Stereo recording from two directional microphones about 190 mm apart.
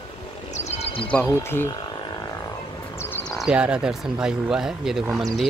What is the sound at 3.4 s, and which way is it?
Speech, 5° right (ahead or behind).